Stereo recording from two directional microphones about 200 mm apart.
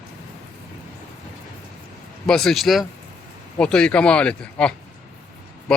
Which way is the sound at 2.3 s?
Centre (ahead or behind).